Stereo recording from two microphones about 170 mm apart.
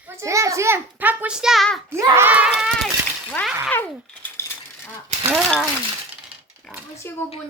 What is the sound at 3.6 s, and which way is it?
Speech, 10° left (ahead or behind).